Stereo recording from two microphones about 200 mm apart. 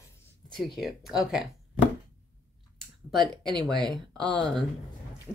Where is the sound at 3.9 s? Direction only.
20° right (ahead or behind).